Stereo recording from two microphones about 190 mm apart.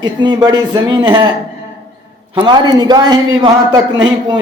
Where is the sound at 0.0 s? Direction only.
25° right (ahead or behind).